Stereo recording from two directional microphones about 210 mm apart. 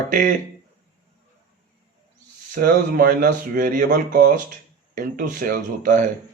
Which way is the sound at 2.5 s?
40° right (ahead or behind).